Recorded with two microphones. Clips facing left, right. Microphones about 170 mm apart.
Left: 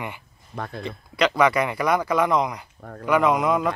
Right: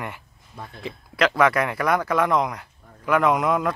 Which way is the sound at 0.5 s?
80° left.